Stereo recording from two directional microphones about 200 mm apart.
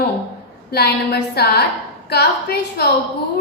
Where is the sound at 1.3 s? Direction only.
55° left (ahead or behind).